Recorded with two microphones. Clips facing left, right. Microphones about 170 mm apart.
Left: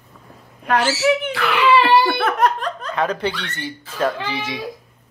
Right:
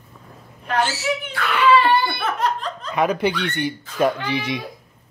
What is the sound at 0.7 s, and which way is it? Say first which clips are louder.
A child's voice: left 5 dB; 90° left.